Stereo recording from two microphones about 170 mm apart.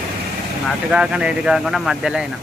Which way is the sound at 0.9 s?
5° right (ahead or behind).